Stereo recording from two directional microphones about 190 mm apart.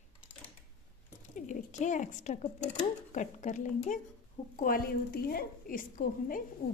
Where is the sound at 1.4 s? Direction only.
40° left (ahead or behind).